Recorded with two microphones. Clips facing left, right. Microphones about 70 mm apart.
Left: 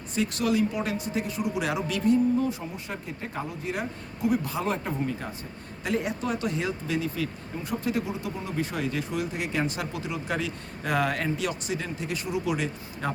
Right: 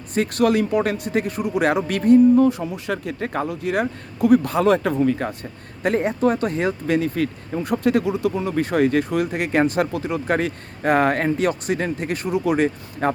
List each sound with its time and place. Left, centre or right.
0.1 s speech: right
4.6 s speech: right
5.8 s speech: right